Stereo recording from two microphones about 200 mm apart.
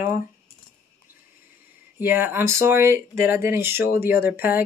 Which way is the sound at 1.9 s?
10° right (ahead or behind).